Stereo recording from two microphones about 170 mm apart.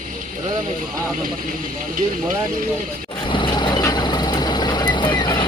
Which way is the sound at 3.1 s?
30° left (ahead or behind).